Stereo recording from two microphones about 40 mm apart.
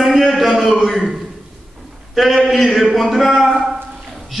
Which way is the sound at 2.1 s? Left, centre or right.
Centre.